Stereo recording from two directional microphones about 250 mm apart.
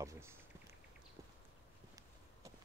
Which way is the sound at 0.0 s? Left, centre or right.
Centre.